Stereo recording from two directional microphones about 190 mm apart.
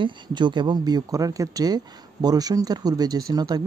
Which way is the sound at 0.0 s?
25° right (ahead or behind).